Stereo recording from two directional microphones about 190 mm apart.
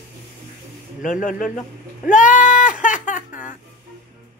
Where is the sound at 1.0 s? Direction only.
45° left (ahead or behind).